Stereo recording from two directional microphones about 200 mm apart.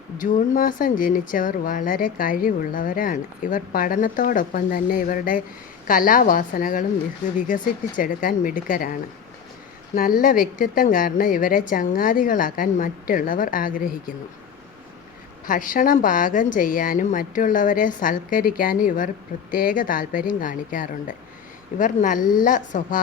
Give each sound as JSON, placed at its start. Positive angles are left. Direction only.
{"t": 0.2, "sound": "a woman's voice", "side_deg": 40}
{"t": 15.4, "sound": "a woman's voice", "side_deg": 40}